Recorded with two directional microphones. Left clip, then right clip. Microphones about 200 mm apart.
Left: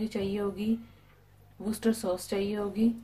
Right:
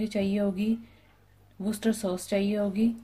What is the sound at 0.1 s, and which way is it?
Speech, 40° right (ahead or behind).